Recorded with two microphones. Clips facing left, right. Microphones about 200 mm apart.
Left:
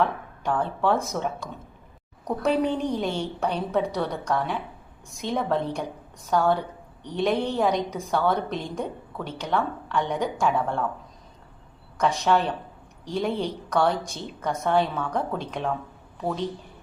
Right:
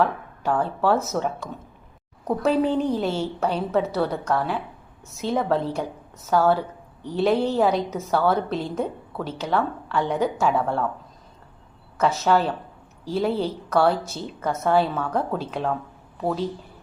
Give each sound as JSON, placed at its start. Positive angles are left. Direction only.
{"t": 0.0, "sound": "a woman's voice", "side_deg": -5}
{"t": 11.9, "sound": "a woman's voice", "side_deg": -5}